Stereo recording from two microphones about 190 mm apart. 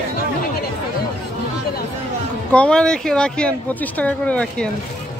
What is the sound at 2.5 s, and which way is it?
Speech, 5° left (ahead or behind).